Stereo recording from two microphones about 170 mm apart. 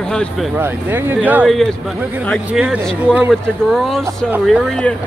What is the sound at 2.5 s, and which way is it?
Speech, 5° right (ahead or behind).